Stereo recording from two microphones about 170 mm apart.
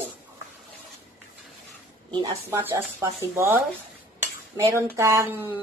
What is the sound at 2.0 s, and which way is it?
Speech, 30° right (ahead or behind).